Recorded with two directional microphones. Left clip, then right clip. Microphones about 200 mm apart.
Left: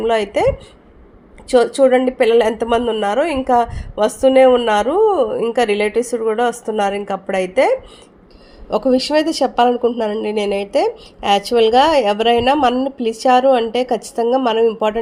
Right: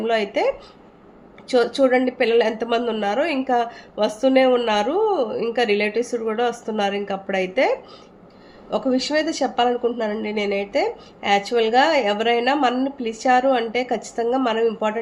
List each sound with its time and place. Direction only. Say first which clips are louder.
0.0 s a woman's voice: left 5 dB; 25° left (ahead or behind)
8.7 s speech: left 6 dB; 35° left (ahead or behind)